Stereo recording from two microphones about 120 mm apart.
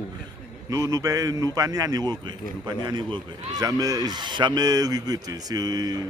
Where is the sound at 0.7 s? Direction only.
30° right (ahead or behind).